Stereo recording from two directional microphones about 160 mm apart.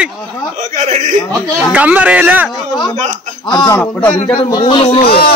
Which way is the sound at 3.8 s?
10° left (ahead or behind).